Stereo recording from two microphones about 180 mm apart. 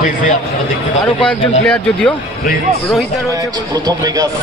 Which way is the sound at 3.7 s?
20° right (ahead or behind).